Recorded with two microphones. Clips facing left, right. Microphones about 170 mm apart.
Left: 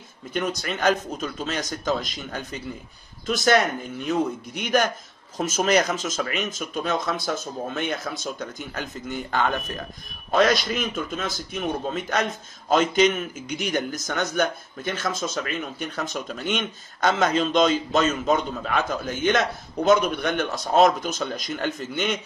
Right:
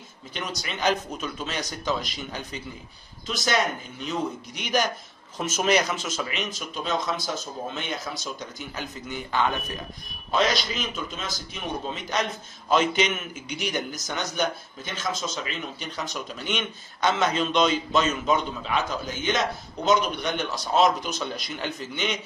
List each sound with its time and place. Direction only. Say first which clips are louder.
0.3 s a man's voice: left 7 dB; 50° left (ahead or behind)